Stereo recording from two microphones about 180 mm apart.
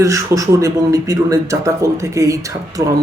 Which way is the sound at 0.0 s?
15° right (ahead or behind).